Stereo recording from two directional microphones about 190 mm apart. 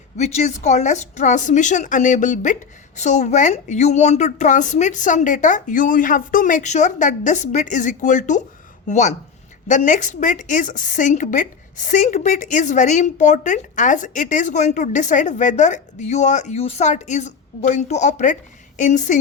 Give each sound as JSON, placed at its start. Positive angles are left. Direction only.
{"t": 0.2, "sound": "a woman's voice", "side_deg": 35}